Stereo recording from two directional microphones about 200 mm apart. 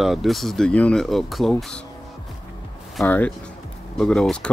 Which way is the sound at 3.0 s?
5° left (ahead or behind).